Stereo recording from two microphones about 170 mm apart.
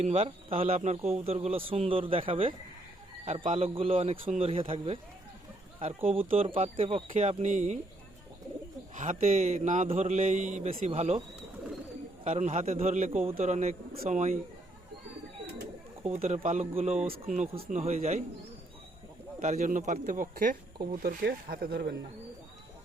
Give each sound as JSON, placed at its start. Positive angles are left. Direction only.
{"t": 0.0, "sound": "a man's voice", "side_deg": -35}
{"t": 9.0, "sound": "a man's voice", "side_deg": -45}
{"t": 12.2, "sound": "a man's voice", "side_deg": -40}
{"t": 13.9, "sound": "speech", "side_deg": -50}
{"t": 16.0, "sound": "a man's voice", "side_deg": -40}
{"t": 17.1, "sound": "speech", "side_deg": -55}
{"t": 17.7, "sound": "a man's voice", "side_deg": -40}
{"t": 19.4, "sound": "speech", "side_deg": -45}